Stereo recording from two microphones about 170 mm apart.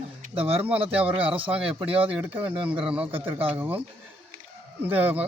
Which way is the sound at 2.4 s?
30° right (ahead or behind).